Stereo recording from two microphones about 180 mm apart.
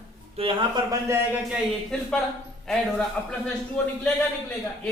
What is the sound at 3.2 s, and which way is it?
Speech, 5° left (ahead or behind).